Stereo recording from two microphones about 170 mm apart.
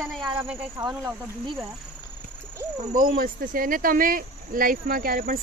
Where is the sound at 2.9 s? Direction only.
55° right (ahead or behind).